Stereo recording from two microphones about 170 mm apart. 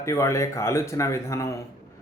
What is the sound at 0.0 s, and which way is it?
Speech, 15° left (ahead or behind).